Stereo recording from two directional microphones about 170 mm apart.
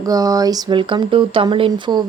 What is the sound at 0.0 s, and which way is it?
Speech, 20° right (ahead or behind).